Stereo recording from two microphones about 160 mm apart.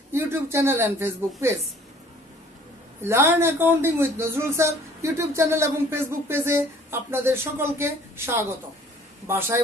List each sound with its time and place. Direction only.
0.1 s speech: 15° right (ahead or behind)
3.0 s speech: 15° right (ahead or behind)